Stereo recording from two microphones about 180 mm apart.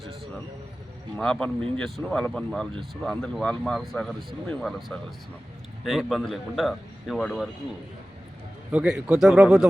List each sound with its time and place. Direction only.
1.1 s speech: 5° left (ahead or behind)
5.8 s speech: centre (ahead or behind)
8.7 s speech: 5° right (ahead or behind)